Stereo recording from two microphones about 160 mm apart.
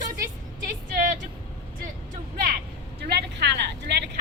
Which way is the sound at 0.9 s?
55° right (ahead or behind).